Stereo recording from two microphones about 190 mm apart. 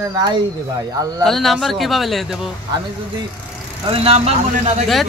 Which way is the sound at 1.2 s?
Centre (ahead or behind).